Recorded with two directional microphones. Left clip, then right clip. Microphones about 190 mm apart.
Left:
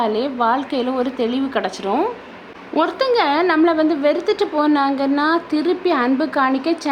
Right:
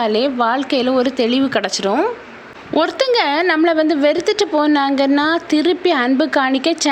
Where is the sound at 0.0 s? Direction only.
15° right (ahead or behind).